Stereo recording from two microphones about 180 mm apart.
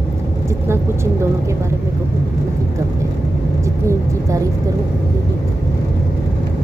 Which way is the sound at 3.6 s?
15° right (ahead or behind).